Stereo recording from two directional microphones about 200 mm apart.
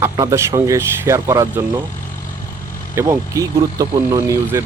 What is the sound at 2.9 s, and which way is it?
Speech, 15° right (ahead or behind).